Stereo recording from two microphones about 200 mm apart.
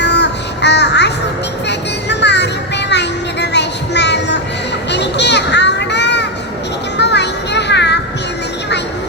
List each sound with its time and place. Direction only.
0.0 s music: 60° left (ahead or behind)
2.9 s a sound: 60° left (ahead or behind)
4.9 s children playing: 60° left (ahead or behind)